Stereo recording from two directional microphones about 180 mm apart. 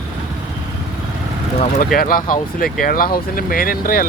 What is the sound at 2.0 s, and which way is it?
Speech, 50° left (ahead or behind).